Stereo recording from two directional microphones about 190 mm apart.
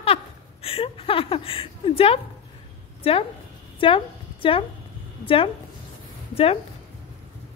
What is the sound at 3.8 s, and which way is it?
A woman's voice, 30° left (ahead or behind).